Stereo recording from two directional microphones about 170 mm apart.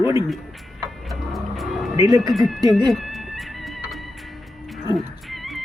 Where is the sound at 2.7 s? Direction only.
Centre (ahead or behind).